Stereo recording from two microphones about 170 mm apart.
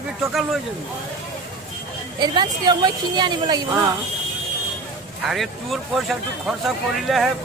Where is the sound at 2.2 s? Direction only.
25° right (ahead or behind).